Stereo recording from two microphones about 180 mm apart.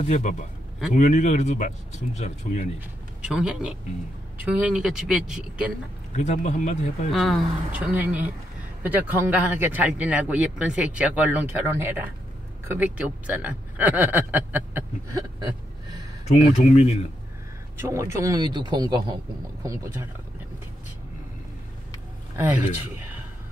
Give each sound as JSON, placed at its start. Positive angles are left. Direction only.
{"t": 0.0, "sound": "speech", "side_deg": 40}
{"t": 3.3, "sound": "speech", "side_deg": -5}
{"t": 6.1, "sound": "speech", "side_deg": 40}
{"t": 7.1, "sound": "a man's voice", "side_deg": 0}
{"t": 16.3, "sound": "speech", "side_deg": 35}
{"t": 17.7, "sound": "a man's voice", "side_deg": -15}